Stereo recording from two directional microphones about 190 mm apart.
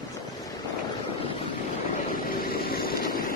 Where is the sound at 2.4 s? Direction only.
50° left (ahead or behind).